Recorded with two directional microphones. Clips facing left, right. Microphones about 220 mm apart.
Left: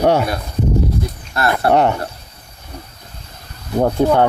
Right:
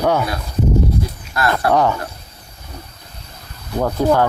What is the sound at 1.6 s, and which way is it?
Speech, 25° left (ahead or behind).